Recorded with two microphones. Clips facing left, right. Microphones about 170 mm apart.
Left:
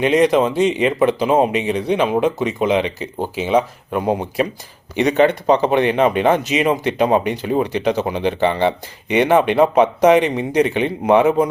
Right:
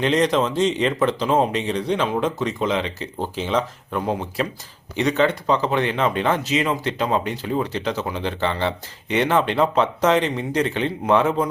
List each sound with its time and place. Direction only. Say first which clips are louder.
0.0 s speech: left 5 dB; 10° left (ahead or behind)
5.1 s speech: left 6 dB; 60° left (ahead or behind)
5.6 s speech: left 6 dB; 15° left (ahead or behind)